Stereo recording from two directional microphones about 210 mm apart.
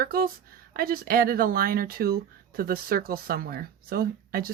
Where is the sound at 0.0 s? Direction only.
45° right (ahead or behind).